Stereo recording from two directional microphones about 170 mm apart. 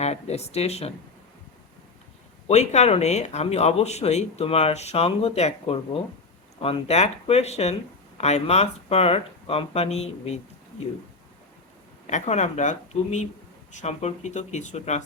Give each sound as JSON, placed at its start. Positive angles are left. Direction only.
{"t": 0.0, "sound": "speech", "side_deg": 40}
{"t": 2.5, "sound": "speech", "side_deg": 40}
{"t": 12.0, "sound": "speech", "side_deg": 40}